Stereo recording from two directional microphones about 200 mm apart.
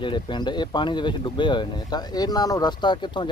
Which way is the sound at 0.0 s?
25° left (ahead or behind).